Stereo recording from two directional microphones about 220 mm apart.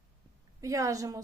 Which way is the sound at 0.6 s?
15° right (ahead or behind).